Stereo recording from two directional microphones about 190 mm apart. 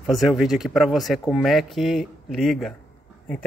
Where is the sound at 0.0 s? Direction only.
Centre (ahead or behind).